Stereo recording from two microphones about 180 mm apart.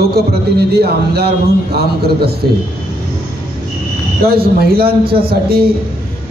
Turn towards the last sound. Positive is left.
turn(degrees=-55)  # may be behind; listen again after turning